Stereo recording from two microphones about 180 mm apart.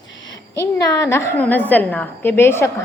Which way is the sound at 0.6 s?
20° left (ahead or behind).